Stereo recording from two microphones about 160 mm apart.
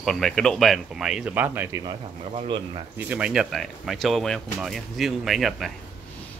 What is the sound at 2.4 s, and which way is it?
Speech, 30° right (ahead or behind).